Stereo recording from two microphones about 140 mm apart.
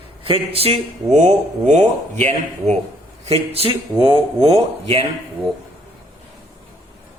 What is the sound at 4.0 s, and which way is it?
Speech, 25° right (ahead or behind).